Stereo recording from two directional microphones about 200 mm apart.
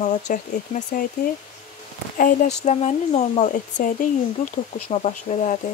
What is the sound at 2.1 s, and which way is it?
Speech, 40° left (ahead or behind).